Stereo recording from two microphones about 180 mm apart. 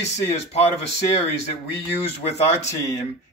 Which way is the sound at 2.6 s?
15° left (ahead or behind).